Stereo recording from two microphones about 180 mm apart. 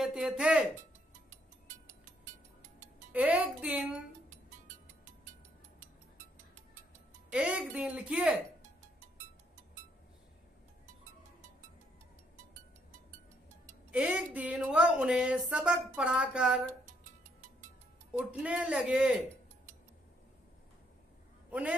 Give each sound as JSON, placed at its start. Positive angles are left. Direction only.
{"t": 0.0, "sound": "speech", "side_deg": 0}
{"t": 1.3, "sound": "music", "side_deg": -45}
{"t": 3.1, "sound": "speech", "side_deg": -10}
{"t": 4.3, "sound": "music", "side_deg": -45}
{"t": 7.2, "sound": "speech", "side_deg": -5}
{"t": 13.9, "sound": "speech", "side_deg": -5}
{"t": 16.8, "sound": "music", "side_deg": -45}
{"t": 18.1, "sound": "speech", "side_deg": -5}
{"t": 21.5, "sound": "a man's voice", "side_deg": -5}